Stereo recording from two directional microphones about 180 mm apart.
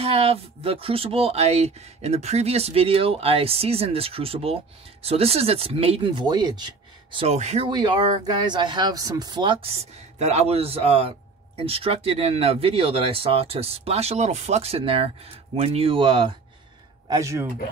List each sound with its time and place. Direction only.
0.0 s a man's voice: 35° right (ahead or behind)
10.1 s a man's voice: 35° right (ahead or behind)
17.1 s speech: 15° right (ahead or behind)